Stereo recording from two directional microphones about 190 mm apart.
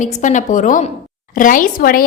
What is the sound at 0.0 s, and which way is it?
A woman's voice, 40° left (ahead or behind).